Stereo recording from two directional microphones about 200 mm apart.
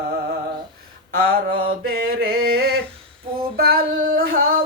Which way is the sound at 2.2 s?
50° right (ahead or behind).